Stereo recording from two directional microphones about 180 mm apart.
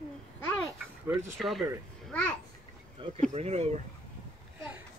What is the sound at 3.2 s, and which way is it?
Speech, 40° right (ahead or behind).